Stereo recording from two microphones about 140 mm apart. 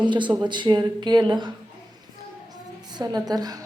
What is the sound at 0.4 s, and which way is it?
Speech, 35° right (ahead or behind).